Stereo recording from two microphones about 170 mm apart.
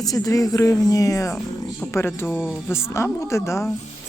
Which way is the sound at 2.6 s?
15° left (ahead or behind).